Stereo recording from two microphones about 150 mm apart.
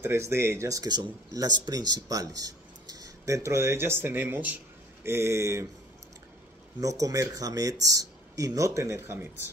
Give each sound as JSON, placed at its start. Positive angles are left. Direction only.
{"t": 0.0, "sound": "speech", "side_deg": -15}
{"t": 6.8, "sound": "speech", "side_deg": -20}